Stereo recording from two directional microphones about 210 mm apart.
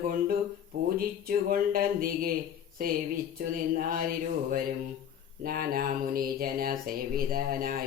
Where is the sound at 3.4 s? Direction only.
45° right (ahead or behind).